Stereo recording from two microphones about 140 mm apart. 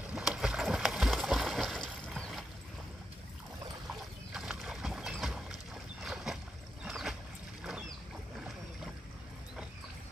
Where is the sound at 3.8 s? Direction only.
5° right (ahead or behind).